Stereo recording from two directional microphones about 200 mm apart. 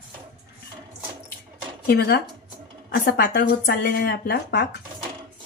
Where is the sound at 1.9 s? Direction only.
50° left (ahead or behind).